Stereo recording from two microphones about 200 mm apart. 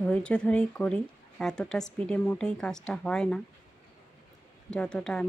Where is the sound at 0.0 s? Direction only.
5° left (ahead or behind).